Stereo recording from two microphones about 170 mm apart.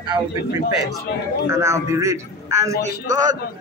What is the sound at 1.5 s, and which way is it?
A man's voice, 15° right (ahead or behind).